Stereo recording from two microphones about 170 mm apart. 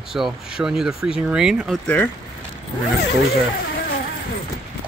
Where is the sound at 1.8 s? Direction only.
10° left (ahead or behind).